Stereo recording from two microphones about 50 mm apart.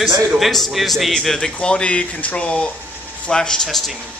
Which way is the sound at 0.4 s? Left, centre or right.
Centre.